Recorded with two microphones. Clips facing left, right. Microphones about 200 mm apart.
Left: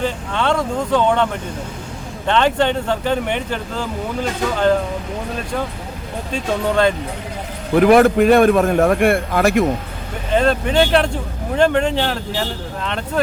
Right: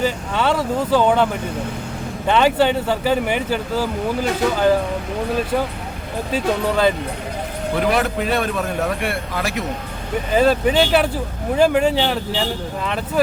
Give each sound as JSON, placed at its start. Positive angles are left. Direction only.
{"t": 0.0, "sound": "speech", "side_deg": -5}
{"t": 6.3, "sound": "speech", "side_deg": -5}
{"t": 7.8, "sound": "a man's voice", "side_deg": 50}
{"t": 10.3, "sound": "speech", "side_deg": -5}